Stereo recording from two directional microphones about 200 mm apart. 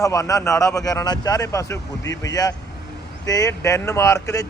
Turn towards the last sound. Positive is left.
turn(degrees=15)  # may be behind; listen again after turning